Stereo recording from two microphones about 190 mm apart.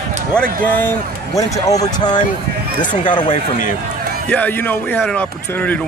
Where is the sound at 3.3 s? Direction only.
45° left (ahead or behind).